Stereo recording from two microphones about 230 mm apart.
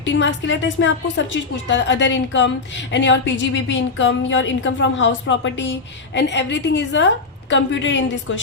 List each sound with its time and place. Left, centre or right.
0.0 s a woman's voice: left